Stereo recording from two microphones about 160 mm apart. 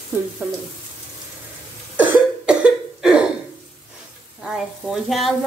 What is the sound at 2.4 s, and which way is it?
Cough, 5° right (ahead or behind).